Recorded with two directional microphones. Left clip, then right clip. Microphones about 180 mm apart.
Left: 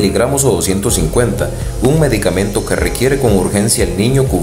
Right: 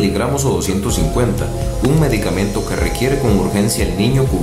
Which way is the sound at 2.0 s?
20° left (ahead or behind).